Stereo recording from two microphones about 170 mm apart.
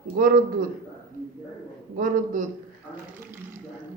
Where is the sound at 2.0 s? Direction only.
50° right (ahead or behind).